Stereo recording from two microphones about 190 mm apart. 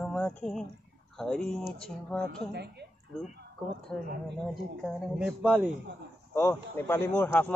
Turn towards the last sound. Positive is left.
turn(degrees=10)  # may be behind; listen again after turning